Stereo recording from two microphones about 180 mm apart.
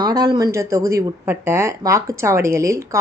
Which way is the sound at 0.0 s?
25° right (ahead or behind).